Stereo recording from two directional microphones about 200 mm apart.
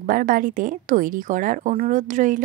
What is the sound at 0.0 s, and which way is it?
Speech, 45° right (ahead or behind).